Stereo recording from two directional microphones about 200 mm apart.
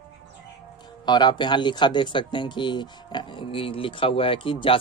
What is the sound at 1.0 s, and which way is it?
Speech, 20° left (ahead or behind).